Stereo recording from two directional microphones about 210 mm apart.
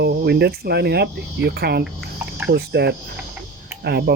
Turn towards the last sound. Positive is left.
turn(degrees=-50)  # may be behind; listen again after turning